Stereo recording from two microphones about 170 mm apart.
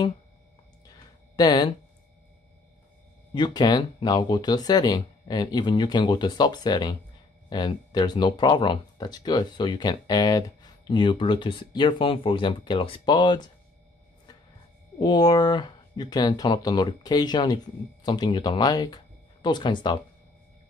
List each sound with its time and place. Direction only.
1.3 s speech: 25° left (ahead or behind)
3.3 s speech: 25° left (ahead or behind)
15.0 s speech: 25° left (ahead or behind)